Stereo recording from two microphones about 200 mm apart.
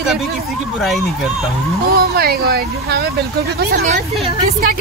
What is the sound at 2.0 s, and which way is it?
Speech, 50° right (ahead or behind).